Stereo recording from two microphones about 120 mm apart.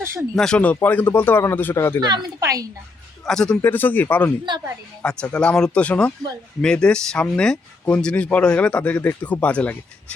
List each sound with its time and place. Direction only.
0.0 s speech: 25° right (ahead or behind)
0.3 s speech: 5° left (ahead or behind)
2.0 s a woman's voice: 40° right (ahead or behind)
3.2 s speech: 5° left (ahead or behind)
3.6 s speech: 15° left (ahead or behind)